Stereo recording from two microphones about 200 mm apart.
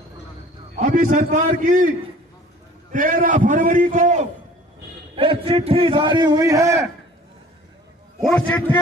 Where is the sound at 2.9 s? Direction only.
40° right (ahead or behind).